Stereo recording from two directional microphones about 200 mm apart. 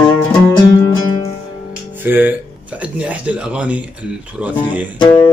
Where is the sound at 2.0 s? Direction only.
10° right (ahead or behind).